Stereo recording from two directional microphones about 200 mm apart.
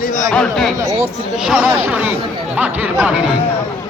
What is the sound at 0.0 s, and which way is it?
Chatter, 45° left (ahead or behind).